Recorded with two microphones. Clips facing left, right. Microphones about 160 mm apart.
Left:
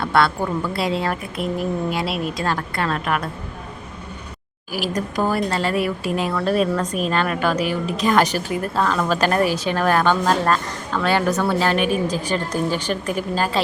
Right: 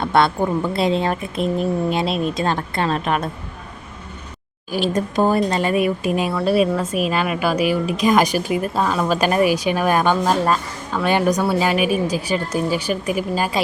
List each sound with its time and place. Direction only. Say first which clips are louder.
0.0 s a woman's voice: right 2 dB; 20° right (ahead or behind)
4.7 s a woman's voice: right 4 dB; 25° right (ahead or behind)